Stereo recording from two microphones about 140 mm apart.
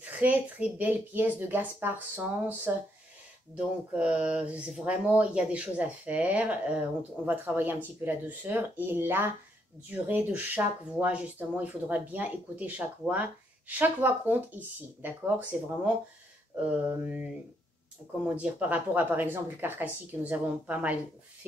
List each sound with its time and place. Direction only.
0.0 s speech: 10° right (ahead or behind)